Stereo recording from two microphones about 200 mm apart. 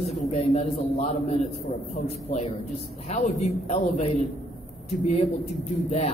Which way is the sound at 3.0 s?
35° left (ahead or behind).